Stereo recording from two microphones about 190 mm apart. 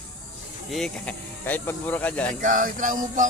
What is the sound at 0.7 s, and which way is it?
Speech, 5° left (ahead or behind).